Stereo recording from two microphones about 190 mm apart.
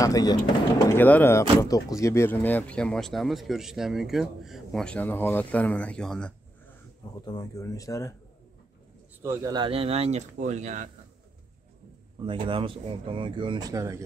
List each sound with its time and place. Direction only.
0.0 s speech: 20° left (ahead or behind)
0.8 s speech: 10° left (ahead or behind)
7.2 s speech: 20° left (ahead or behind)
9.2 s speech: 15° right (ahead or behind); by 10.9 s 40° right (ahead or behind)
12.2 s speech: 25° right (ahead or behind)